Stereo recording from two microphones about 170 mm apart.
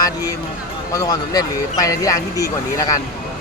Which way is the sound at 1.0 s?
20° left (ahead or behind).